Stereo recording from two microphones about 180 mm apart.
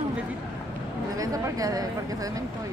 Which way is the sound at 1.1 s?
20° right (ahead or behind).